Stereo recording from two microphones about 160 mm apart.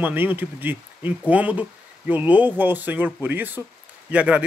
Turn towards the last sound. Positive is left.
turn(degrees=-5)  # may be behind; listen again after turning